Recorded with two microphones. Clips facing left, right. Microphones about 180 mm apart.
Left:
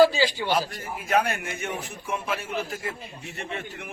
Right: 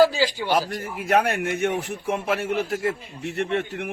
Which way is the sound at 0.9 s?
65° right (ahead or behind).